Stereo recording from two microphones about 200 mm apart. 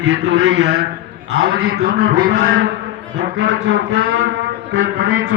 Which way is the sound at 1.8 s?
60° right (ahead or behind).